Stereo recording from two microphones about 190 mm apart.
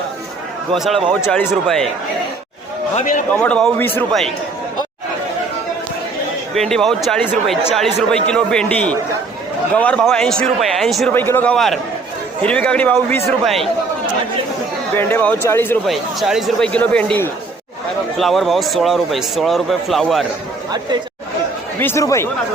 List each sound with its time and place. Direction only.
0.7 s a man's voice: centre (ahead or behind)
2.9 s a man's voice: 40° left (ahead or behind)
3.3 s a man's voice: 5° left (ahead or behind)
6.5 s a man's voice: centre (ahead or behind)
14.9 s a man's voice: 10° left (ahead or behind)
15.9 s a man's voice: centre (ahead or behind)
21.8 s a man's voice: 15° left (ahead or behind)